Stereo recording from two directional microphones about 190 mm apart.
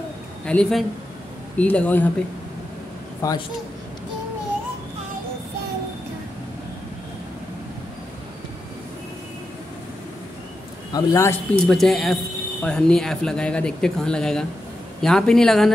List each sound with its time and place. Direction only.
0.5 s a man's voice: 5° left (ahead or behind)
3.2 s speech: 20° left (ahead or behind)
10.9 s a man's voice: 20° left (ahead or behind)
11.6 s speech: centre (ahead or behind)